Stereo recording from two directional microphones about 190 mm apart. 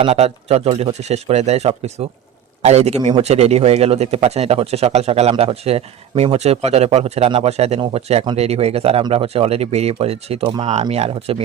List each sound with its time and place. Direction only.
0.0 s a man's voice: 30° right (ahead or behind)